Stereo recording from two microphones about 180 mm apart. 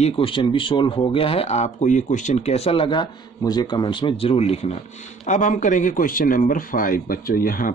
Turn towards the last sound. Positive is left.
turn(degrees=50)  # may be behind; listen again after turning